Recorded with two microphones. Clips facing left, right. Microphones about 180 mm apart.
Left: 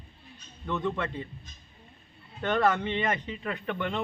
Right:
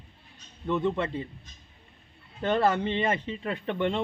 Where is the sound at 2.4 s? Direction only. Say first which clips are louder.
Right 1 dB; 30° right (ahead or behind).